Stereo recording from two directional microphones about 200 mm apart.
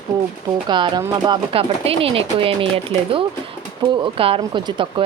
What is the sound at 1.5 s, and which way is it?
Speech, 30° right (ahead or behind).